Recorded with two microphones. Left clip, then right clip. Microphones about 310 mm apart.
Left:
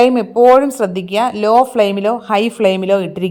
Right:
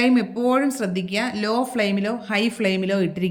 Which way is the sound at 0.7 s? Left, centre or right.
Centre.